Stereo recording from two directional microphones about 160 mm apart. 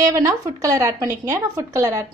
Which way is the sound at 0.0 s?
20° right (ahead or behind).